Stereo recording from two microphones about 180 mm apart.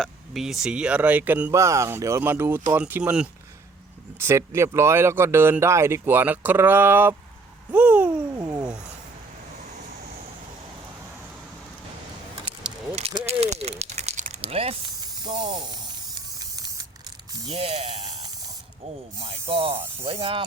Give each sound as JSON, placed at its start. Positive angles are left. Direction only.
{"t": 0.0, "sound": "speech", "side_deg": 0}
{"t": 7.7, "sound": "a sound", "side_deg": -5}
{"t": 8.4, "sound": "cat", "side_deg": -20}
{"t": 12.6, "sound": "a sound", "side_deg": -30}
{"t": 15.2, "sound": "spray", "side_deg": -25}
{"t": 17.5, "sound": "spray", "side_deg": -35}
{"t": 19.2, "sound": "spray", "side_deg": -35}